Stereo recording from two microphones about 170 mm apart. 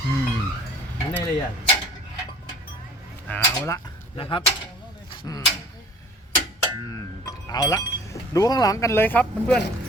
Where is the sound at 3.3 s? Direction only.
15° left (ahead or behind).